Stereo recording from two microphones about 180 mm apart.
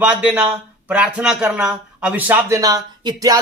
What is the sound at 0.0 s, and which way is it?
Speech, 5° right (ahead or behind).